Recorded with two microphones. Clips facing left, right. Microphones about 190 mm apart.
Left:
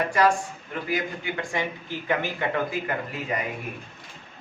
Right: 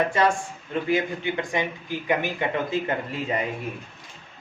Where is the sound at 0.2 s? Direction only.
25° right (ahead or behind).